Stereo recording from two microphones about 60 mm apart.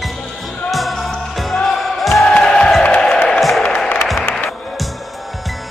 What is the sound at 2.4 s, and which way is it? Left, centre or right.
Music, centre.